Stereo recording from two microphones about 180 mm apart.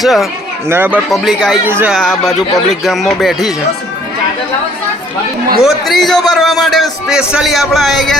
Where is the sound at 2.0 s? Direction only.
Centre (ahead or behind).